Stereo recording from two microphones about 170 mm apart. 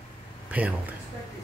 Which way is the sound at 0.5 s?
10° right (ahead or behind).